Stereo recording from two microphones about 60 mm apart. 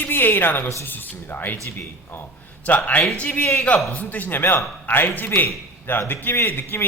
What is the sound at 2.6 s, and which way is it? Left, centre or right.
A man's voice, left.